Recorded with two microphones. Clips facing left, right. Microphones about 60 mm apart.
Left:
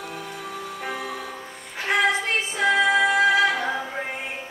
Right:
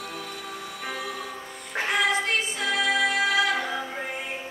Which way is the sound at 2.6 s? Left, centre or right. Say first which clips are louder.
Left 7 dB; left.